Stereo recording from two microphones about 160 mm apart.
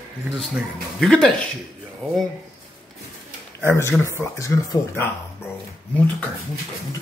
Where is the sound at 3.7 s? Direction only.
15° left (ahead or behind).